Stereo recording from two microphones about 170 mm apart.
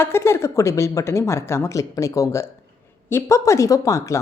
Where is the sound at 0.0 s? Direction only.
15° left (ahead or behind).